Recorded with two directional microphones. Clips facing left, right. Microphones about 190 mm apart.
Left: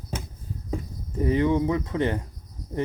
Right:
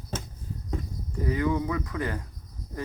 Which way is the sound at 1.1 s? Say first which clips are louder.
Left 5 dB; 25° left (ahead or behind).